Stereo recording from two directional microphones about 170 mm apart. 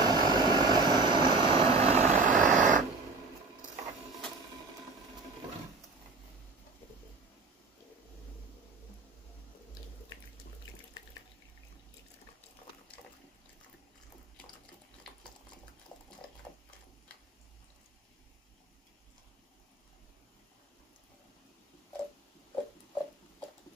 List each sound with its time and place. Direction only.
0.0 s vehicle: 25° right (ahead or behind); by 2.8 s 50° right (ahead or behind)